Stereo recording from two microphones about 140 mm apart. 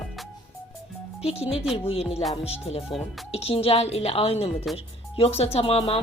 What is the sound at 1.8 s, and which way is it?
Speech, 45° left (ahead or behind).